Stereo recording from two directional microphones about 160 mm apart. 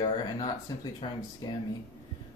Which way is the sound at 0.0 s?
25° left (ahead or behind).